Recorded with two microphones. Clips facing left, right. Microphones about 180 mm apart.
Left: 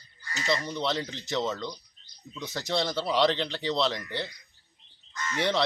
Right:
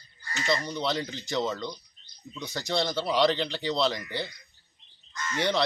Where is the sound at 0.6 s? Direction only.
Centre (ahead or behind).